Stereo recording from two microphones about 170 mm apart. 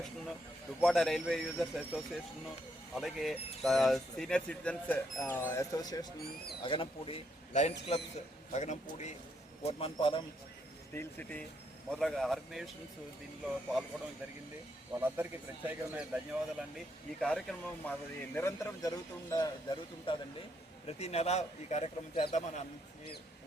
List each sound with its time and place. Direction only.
0.8 s a man's voice: centre (ahead or behind); by 10.2 s 30° left (ahead or behind)
10.9 s a man's voice: 10° left (ahead or behind)
14.9 s a man's voice: 15° right (ahead or behind); by 20.1 s 25° left (ahead or behind)
21.0 s a man's voice: 40° left (ahead or behind)